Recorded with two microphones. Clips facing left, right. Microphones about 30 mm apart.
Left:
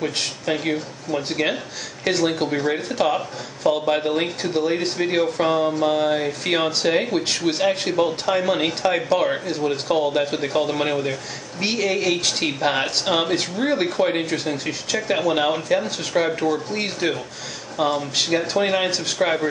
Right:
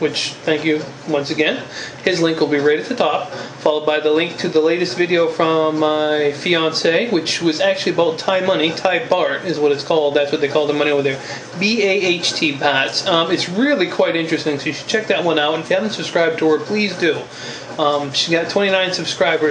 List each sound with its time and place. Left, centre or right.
0.0 s speech: right